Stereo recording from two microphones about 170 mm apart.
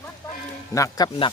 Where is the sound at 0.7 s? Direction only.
20° left (ahead or behind).